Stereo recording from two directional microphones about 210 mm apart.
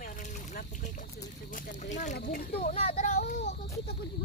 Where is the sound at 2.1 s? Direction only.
45° left (ahead or behind).